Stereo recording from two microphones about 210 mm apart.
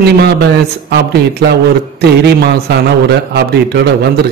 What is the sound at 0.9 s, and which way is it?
A man's voice, 50° right (ahead or behind).